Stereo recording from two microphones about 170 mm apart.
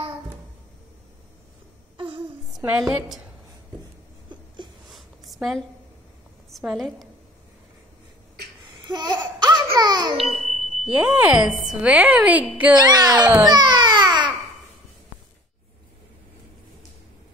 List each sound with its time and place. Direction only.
2.0 s a sound: 30° right (ahead or behind)
2.6 s a woman's voice: 5° right (ahead or behind)
4.3 s a sound: 25° right (ahead or behind)
4.8 s a sound: centre (ahead or behind)
6.5 s a woman's voice: centre (ahead or behind)
8.7 s laughter: 25° right (ahead or behind)
9.8 s a child's voice: 25° right (ahead or behind)
10.1 s ding: centre (ahead or behind)
10.7 s speech: 5° right (ahead or behind)
12.7 s speech: 25° right (ahead or behind)
13.4 s babbling: 25° right (ahead or behind)